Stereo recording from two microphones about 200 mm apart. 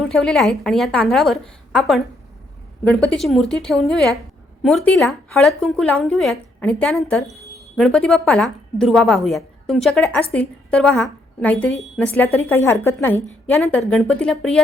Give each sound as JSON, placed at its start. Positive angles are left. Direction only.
{"t": 0.0, "sound": "a woman's voice", "side_deg": 0}